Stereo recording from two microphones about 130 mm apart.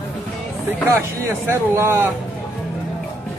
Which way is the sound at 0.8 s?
20° right (ahead or behind).